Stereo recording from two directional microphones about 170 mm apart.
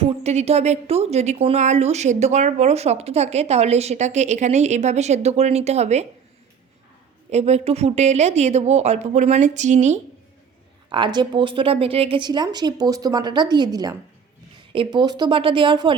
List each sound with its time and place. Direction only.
0.0 s speech: 40° right (ahead or behind)
7.3 s speech: 40° right (ahead or behind)
10.8 s speech: 25° right (ahead or behind)